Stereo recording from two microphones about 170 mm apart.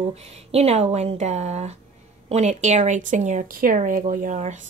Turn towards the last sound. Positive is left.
turn(degrees=-45)  # may be behind; listen again after turning